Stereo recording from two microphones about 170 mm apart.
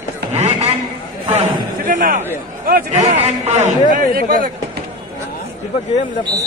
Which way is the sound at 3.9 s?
55° right (ahead or behind).